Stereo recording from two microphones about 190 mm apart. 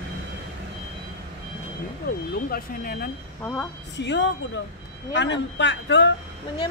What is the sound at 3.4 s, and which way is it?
Speech, 10° left (ahead or behind).